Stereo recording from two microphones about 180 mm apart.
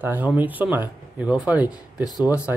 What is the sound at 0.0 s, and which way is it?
Speech, 10° right (ahead or behind).